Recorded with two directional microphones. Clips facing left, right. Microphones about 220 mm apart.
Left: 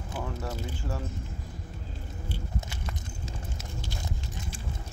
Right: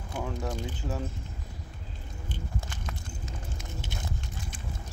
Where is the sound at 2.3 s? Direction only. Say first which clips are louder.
Right 1 dB; 10° left (ahead or behind).